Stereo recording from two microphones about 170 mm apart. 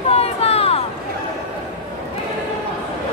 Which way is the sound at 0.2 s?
35° left (ahead or behind).